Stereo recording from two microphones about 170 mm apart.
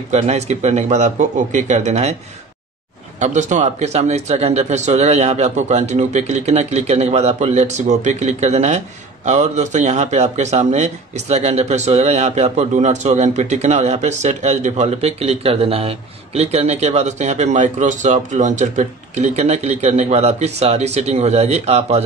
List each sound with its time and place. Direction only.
0.1 s speech: 40° right (ahead or behind)
3.2 s speech: 45° right (ahead or behind)